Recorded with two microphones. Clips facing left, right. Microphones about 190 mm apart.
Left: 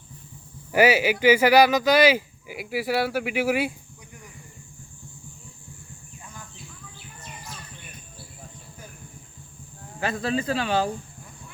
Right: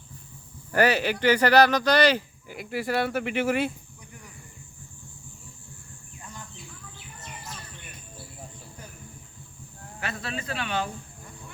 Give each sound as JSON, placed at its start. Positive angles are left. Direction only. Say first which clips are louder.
{"t": 0.7, "sound": "speech", "louder": "left 3 dB", "side_deg": 10}
{"t": 10.0, "sound": "speech", "louder": "left 8 dB", "side_deg": 35}